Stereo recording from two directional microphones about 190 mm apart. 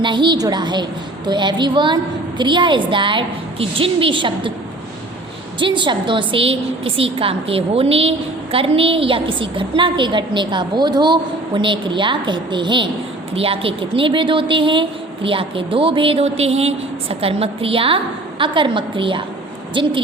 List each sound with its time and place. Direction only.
0.0 s a woman's voice: 25° right (ahead or behind)
5.5 s a woman's voice: 25° right (ahead or behind)